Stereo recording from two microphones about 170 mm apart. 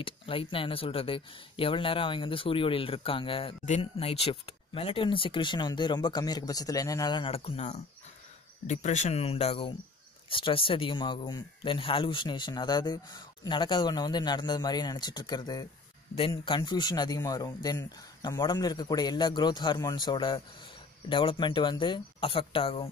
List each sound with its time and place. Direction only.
0.0 s speech: 30° left (ahead or behind)